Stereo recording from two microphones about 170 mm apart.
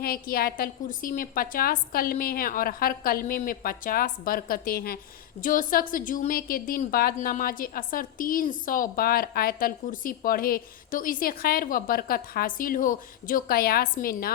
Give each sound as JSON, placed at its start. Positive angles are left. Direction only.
{"t": 0.0, "sound": "a woman's voice", "side_deg": 60}